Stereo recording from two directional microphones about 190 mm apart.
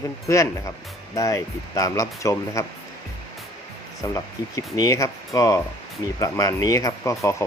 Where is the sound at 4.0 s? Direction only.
20° left (ahead or behind).